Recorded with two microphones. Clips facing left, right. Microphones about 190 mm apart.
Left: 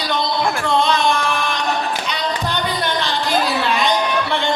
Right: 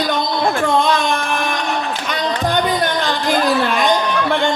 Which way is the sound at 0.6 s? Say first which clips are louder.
Left 1 dB; 50° right (ahead or behind).